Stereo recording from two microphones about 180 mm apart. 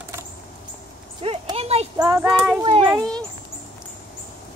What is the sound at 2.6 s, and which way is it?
Speech, 30° right (ahead or behind).